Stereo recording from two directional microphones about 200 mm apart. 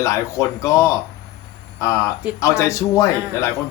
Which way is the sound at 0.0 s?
15° left (ahead or behind).